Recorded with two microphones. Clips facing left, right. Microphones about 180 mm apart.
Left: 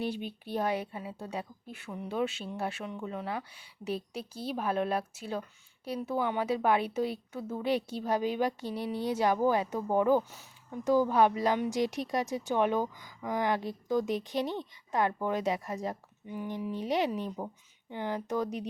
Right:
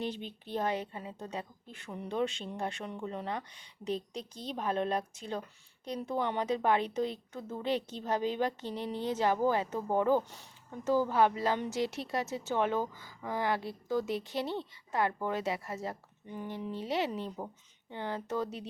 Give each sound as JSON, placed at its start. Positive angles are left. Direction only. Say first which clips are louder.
{"t": 0.0, "sound": "a woman's voice", "louder": "left 3 dB", "side_deg": 10}